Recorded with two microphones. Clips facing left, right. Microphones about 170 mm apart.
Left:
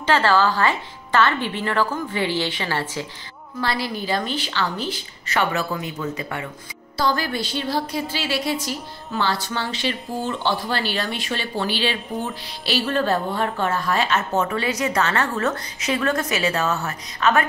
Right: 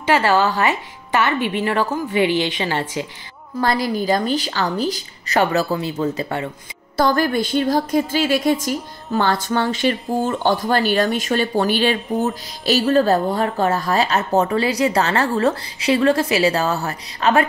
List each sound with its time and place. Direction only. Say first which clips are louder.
0.0 s a woman's voice: right 2 dB; 15° right (ahead or behind)
3.6 s a woman's voice: right 6 dB; 45° right (ahead or behind)
7.0 s a woman's voice: right 6 dB; 50° right (ahead or behind); by 17.5 s 35° right (ahead or behind)